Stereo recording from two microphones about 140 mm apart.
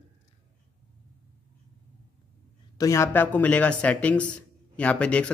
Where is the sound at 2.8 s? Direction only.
20° left (ahead or behind).